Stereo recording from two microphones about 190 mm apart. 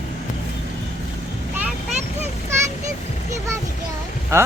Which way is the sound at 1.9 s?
35° right (ahead or behind).